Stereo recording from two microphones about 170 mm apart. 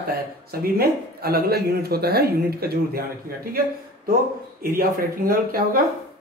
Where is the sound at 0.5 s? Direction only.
65° right (ahead or behind).